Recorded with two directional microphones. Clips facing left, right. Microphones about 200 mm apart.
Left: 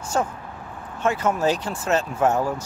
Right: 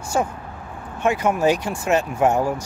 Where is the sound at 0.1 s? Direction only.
10° right (ahead or behind).